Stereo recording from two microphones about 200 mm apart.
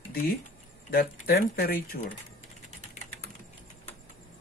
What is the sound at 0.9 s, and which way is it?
Speech, 50° left (ahead or behind).